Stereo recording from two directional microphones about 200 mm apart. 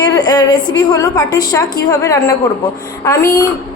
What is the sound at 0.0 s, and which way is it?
A woman's voice, 20° left (ahead or behind).